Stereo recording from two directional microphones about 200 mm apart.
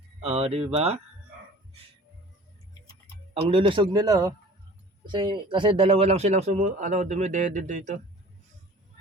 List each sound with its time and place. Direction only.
0.2 s speech: 30° right (ahead or behind)
3.5 s a man's voice: 25° right (ahead or behind)